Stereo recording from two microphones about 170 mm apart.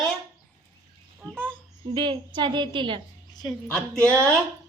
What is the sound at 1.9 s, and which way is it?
A woman's voice, 30° right (ahead or behind).